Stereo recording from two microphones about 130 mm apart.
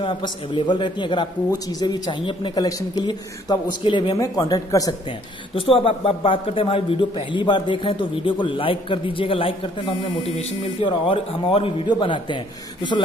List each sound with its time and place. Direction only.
0.0 s a man's voice: 40° left (ahead or behind)
4.2 s speech: 25° left (ahead or behind)
5.5 s a man's voice: 40° left (ahead or behind)
10.8 s a man's voice: 45° left (ahead or behind)